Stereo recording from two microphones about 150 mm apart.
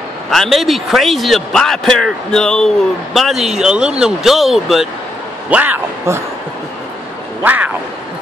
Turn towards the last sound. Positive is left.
turn(degrees=-10)  # may be behind; listen again after turning